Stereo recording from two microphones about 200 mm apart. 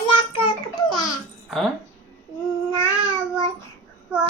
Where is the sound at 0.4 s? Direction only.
20° left (ahead or behind).